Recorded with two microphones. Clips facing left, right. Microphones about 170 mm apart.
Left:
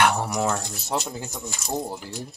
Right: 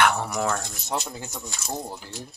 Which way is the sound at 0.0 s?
15° left (ahead or behind).